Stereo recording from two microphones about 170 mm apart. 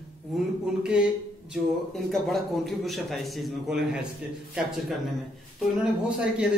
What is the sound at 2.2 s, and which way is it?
A man's voice, centre (ahead or behind).